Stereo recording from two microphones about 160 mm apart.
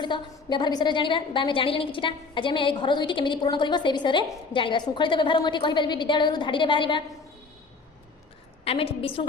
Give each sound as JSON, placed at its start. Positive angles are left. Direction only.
{"t": 0.0, "sound": "a woman's voice", "side_deg": 30}
{"t": 8.6, "sound": "a woman's voice", "side_deg": 35}